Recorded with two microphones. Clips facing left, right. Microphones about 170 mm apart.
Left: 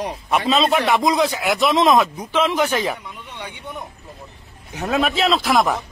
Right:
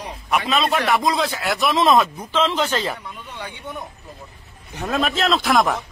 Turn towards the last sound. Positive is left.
turn(degrees=0)  # may be behind; listen again after turning